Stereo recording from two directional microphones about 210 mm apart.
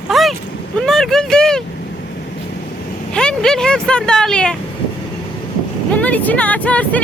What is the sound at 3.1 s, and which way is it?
Speech, 5° left (ahead or behind).